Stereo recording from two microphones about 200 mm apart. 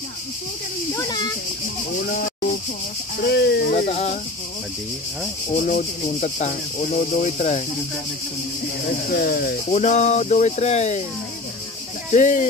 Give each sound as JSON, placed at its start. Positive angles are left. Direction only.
{"t": 0.9, "sound": "a sound", "side_deg": 20}
{"t": 3.2, "sound": "speech", "side_deg": 55}
{"t": 3.7, "sound": "speech", "side_deg": 35}
{"t": 5.6, "sound": "speech", "side_deg": 40}
{"t": 8.8, "sound": "speech", "side_deg": 50}
{"t": 9.7, "sound": "speech", "side_deg": 35}
{"t": 12.1, "sound": "speech", "side_deg": 40}